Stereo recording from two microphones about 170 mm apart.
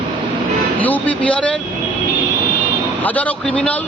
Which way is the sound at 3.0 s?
10° left (ahead or behind).